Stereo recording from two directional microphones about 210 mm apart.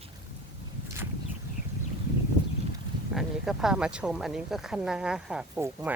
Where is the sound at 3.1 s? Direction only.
Centre (ahead or behind).